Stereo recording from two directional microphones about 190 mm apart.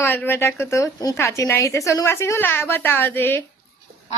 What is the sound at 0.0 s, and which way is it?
A woman's voice, 10° left (ahead or behind).